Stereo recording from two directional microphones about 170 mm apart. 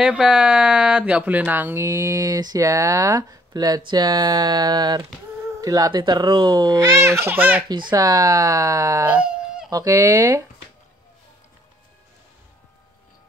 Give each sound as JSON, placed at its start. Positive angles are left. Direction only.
{"t": 0.0, "sound": "speech", "side_deg": -5}
{"t": 7.6, "sound": "speech", "side_deg": -25}
{"t": 9.0, "sound": "a sound", "side_deg": -5}
{"t": 9.7, "sound": "speech", "side_deg": -20}